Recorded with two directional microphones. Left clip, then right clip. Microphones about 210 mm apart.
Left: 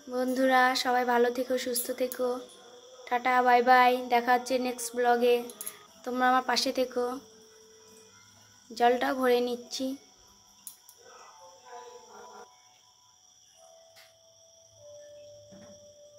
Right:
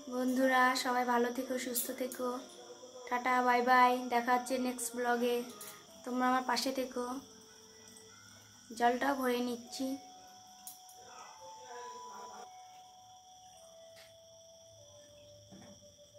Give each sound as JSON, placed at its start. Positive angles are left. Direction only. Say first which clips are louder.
{"t": 0.1, "sound": "speech", "louder": "left 6 dB", "side_deg": 15}
{"t": 8.7, "sound": "speech", "louder": "left 6 dB", "side_deg": 15}